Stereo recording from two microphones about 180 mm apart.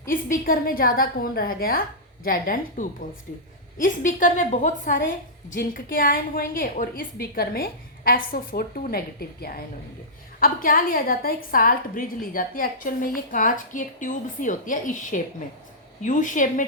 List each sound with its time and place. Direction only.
0.1 s a woman's voice: 50° left (ahead or behind)